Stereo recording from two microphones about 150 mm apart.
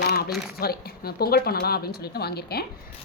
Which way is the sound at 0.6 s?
90° left.